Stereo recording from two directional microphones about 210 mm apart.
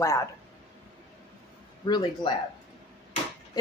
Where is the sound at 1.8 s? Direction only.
20° left (ahead or behind).